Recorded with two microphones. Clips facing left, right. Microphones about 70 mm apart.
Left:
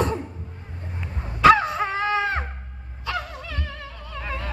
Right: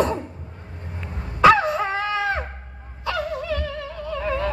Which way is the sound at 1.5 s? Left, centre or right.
Left.